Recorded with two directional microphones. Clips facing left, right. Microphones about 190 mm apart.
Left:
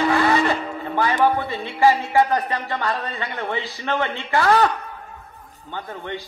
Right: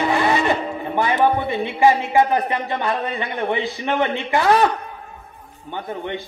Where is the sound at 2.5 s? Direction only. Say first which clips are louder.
Right 2 dB; 20° right (ahead or behind).